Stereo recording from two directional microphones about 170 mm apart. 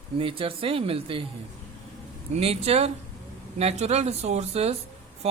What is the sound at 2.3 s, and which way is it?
Speech, 35° right (ahead or behind).